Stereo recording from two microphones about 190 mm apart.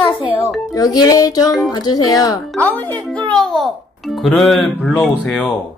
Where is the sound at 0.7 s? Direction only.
20° left (ahead or behind).